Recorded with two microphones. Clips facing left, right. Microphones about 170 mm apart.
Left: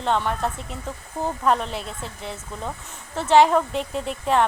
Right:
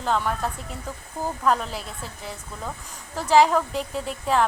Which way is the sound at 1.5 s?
Centre (ahead or behind).